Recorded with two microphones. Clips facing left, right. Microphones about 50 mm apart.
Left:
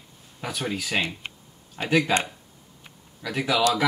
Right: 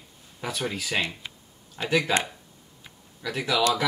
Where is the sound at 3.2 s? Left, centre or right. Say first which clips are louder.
Left 2 dB; centre.